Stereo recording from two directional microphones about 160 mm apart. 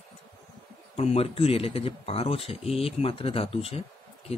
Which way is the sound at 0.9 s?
40° left (ahead or behind).